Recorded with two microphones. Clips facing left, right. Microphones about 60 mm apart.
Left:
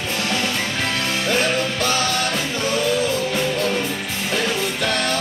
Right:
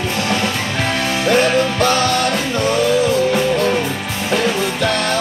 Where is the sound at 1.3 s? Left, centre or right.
Right.